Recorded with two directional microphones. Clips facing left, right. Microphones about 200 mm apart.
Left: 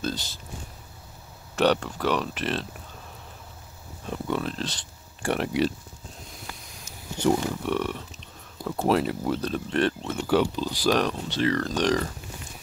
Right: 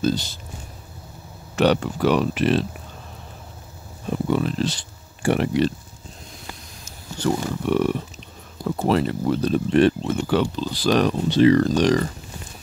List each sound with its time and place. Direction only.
0.0 s speech: centre (ahead or behind)
1.5 s speech: centre (ahead or behind)
4.1 s speech: 5° right (ahead or behind)
7.2 s speech: 20° left (ahead or behind)
7.6 s speech: 10° right (ahead or behind)
8.6 s speech: 5° left (ahead or behind)
10.1 s speech: 5° left (ahead or behind)
11.2 s speech: 15° right (ahead or behind)